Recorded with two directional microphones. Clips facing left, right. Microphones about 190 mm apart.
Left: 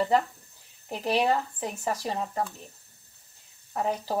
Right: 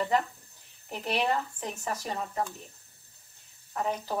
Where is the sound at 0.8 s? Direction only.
35° left (ahead or behind).